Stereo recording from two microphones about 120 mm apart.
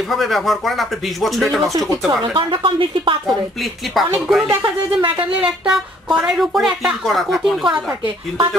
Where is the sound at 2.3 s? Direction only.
45° right (ahead or behind).